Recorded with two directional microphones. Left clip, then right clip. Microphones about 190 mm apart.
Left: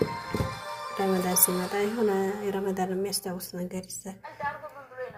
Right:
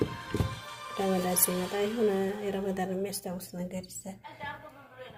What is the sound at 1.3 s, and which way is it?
A woman's voice, 5° right (ahead or behind).